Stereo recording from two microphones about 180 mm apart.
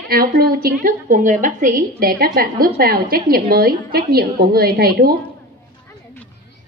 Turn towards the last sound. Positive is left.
turn(degrees=-55)  # may be behind; listen again after turning